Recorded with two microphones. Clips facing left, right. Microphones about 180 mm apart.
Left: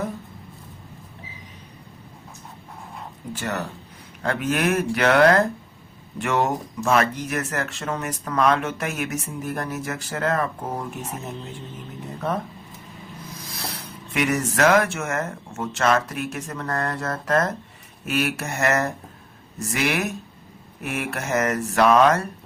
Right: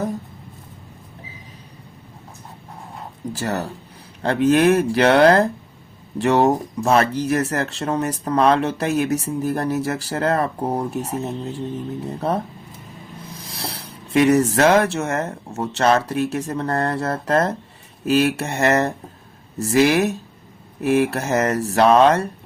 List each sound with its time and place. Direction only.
3.3 s speech: 35° right (ahead or behind)